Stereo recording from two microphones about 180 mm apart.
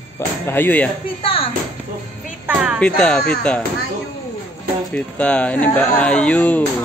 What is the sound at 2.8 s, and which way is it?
Speech, 5° left (ahead or behind).